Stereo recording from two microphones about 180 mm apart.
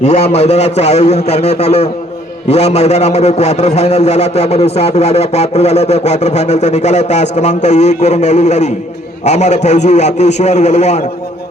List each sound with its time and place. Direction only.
0.0 s a man's voice: 35° left (ahead or behind)